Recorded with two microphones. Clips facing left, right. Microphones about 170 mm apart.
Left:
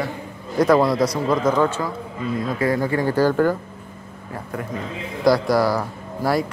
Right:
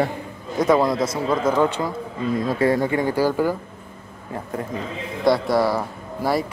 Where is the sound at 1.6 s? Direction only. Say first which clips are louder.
Even; 15° right (ahead or behind).